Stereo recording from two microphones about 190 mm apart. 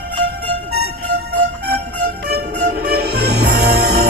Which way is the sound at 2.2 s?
60° right (ahead or behind).